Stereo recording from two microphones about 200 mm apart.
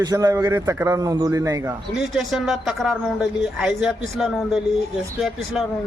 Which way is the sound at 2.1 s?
Centre (ahead or behind).